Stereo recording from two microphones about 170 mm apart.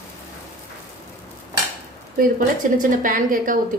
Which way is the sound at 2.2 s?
55° right (ahead or behind).